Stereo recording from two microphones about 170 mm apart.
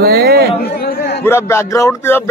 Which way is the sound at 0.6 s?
65° left (ahead or behind).